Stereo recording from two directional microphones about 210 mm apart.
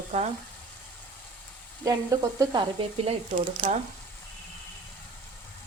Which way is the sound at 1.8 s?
15° right (ahead or behind).